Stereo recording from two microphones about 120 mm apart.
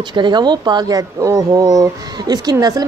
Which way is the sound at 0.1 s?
40° right (ahead or behind).